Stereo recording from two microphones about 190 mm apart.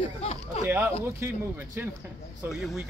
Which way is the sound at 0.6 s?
10° right (ahead or behind).